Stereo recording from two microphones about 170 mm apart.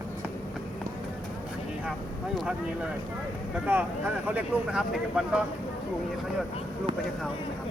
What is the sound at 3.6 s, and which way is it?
Speech, 10° right (ahead or behind).